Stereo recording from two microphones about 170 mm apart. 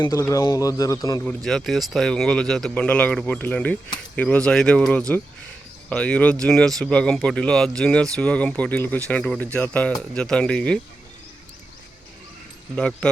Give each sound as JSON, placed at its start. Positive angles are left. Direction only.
{"t": 0.0, "sound": "speech", "side_deg": 15}
{"t": 1.5, "sound": "speech", "side_deg": 0}
{"t": 12.7, "sound": "speech", "side_deg": 5}